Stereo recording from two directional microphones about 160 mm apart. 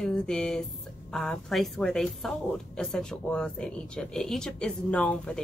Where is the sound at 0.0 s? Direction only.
5° left (ahead or behind).